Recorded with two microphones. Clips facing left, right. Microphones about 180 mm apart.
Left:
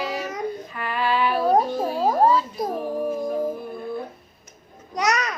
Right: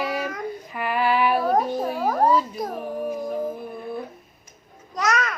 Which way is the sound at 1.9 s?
25° left (ahead or behind).